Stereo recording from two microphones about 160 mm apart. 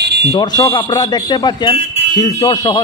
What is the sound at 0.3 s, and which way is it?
Speech, 25° left (ahead or behind).